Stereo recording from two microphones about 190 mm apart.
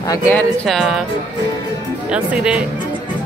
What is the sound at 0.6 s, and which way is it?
Speech, centre (ahead or behind).